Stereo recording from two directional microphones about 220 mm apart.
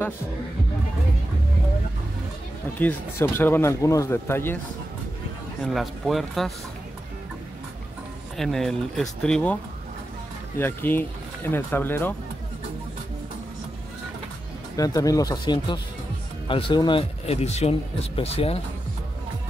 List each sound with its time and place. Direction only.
2.8 s speech: 10° left (ahead or behind)
5.6 s speech: centre (ahead or behind)
8.4 s speech: centre (ahead or behind)
10.6 s speech: 10° left (ahead or behind)
14.8 s speech: 15° left (ahead or behind)